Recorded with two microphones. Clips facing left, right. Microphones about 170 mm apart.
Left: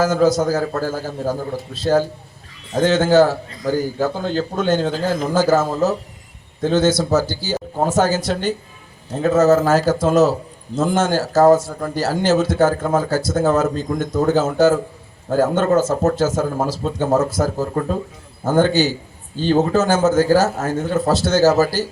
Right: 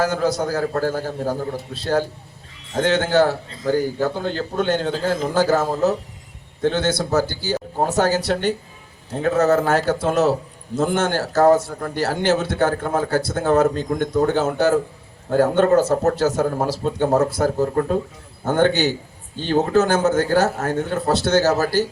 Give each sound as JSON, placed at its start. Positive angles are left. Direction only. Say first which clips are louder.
{"t": 0.0, "sound": "a man's voice", "louder": "left 5 dB", "side_deg": -60}
{"t": 4.9, "sound": "a man's voice", "louder": "left 1 dB", "side_deg": -30}
{"t": 5.3, "sound": "a man's voice", "louder": "left 3 dB", "side_deg": -60}